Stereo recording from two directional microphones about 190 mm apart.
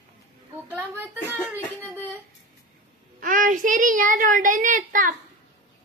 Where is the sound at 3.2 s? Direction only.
45° right (ahead or behind).